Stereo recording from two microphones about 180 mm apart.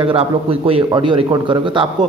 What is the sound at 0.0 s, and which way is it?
A man's voice, 30° right (ahead or behind).